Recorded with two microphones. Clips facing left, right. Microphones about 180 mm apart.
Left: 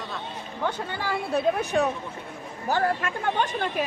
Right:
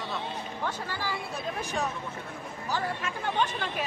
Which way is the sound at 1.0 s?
60° left (ahead or behind).